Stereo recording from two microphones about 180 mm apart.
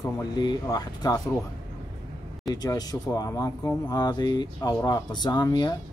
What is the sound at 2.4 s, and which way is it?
Speech, 20° left (ahead or behind).